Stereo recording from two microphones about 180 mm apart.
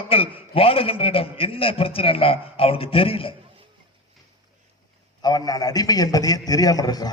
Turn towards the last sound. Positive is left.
turn(degrees=20)  # may be behind; listen again after turning